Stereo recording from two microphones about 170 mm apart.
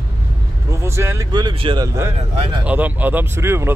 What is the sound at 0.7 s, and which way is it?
Speech, 15° right (ahead or behind).